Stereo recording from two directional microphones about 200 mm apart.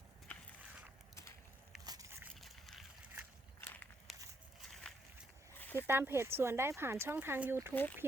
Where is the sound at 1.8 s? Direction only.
20° right (ahead or behind).